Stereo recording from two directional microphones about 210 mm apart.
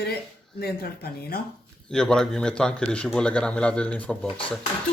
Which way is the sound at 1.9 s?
5° left (ahead or behind).